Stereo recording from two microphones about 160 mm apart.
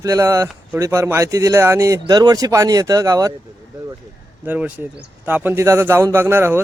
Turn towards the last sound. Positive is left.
turn(degrees=-15)  # may be behind; listen again after turning